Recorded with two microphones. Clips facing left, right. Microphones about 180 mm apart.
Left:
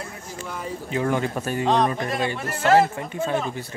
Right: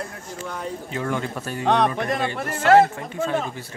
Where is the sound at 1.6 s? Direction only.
65° right (ahead or behind).